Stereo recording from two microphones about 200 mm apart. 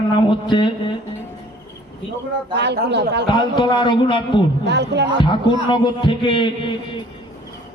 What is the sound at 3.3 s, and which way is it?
A man's voice, 20° left (ahead or behind).